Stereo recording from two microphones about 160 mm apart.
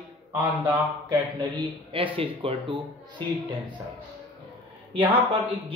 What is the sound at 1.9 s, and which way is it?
Speech, 35° right (ahead or behind).